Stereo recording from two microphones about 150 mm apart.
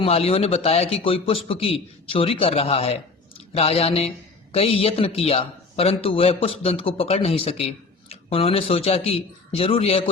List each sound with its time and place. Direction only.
0.0 s a man's voice: 40° left (ahead or behind)